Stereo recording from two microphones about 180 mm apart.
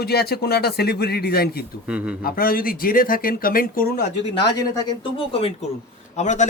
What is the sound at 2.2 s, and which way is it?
Speech, 55° left (ahead or behind).